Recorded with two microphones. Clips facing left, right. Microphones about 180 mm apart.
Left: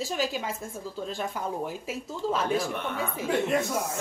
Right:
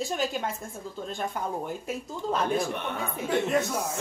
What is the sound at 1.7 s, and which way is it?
Speech, 5° left (ahead or behind).